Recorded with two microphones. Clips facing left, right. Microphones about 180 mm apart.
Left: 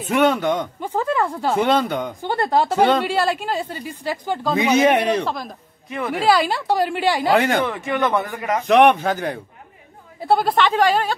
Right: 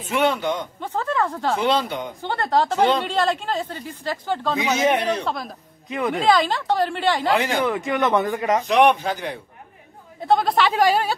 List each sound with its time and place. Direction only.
0.1 s speech: 50° left (ahead or behind)
0.7 s speech: 10° left (ahead or behind)
1.6 s speech: 50° left (ahead or behind)
2.2 s speech: 10° left (ahead or behind)
4.7 s speech: 60° left (ahead or behind)
5.2 s a woman's voice: centre (ahead or behind)
5.9 s speech: 20° right (ahead or behind)
6.1 s speech: 5° left (ahead or behind)
7.3 s speech: 50° left (ahead or behind)
7.6 s speech: 15° right (ahead or behind)
8.6 s speech: 55° left (ahead or behind)
10.2 s a woman's voice: 5° left (ahead or behind)